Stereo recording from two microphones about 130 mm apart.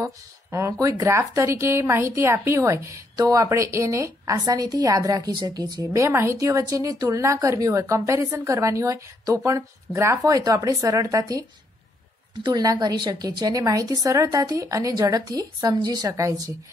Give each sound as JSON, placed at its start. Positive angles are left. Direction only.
{"t": 0.0, "sound": "speech", "side_deg": -25}
{"t": 5.9, "sound": "speech", "side_deg": -20}
{"t": 12.4, "sound": "speech", "side_deg": -30}